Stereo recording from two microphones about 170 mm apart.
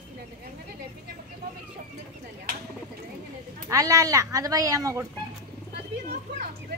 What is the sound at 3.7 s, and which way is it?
A woman's voice, 20° right (ahead or behind).